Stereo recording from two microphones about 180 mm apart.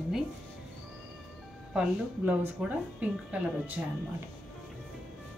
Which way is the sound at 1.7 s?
5° right (ahead or behind).